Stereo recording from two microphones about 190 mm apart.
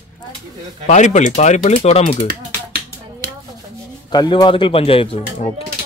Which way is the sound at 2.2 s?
50° right (ahead or behind).